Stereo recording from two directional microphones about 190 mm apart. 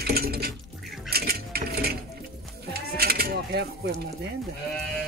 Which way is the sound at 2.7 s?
55° right (ahead or behind).